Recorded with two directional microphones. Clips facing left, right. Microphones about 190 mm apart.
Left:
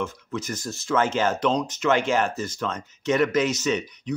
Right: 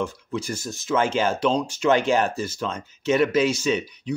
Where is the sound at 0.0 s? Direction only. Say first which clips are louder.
Right 2 dB; 35° right (ahead or behind).